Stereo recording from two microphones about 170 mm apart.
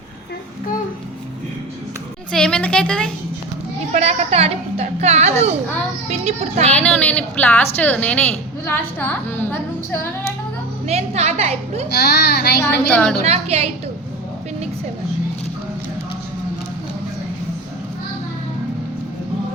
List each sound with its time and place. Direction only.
2.3 s a woman's voice: 5° left (ahead or behind)
3.9 s a child's voice: 35° right (ahead or behind)
6.7 s a woman's voice: 10° left (ahead or behind)
10.8 s a child's voice: 40° right (ahead or behind)
11.9 s a child's voice: 70° left (ahead or behind)
12.9 s a woman's voice: 5° left (ahead or behind)
13.2 s a child's voice: 40° right (ahead or behind)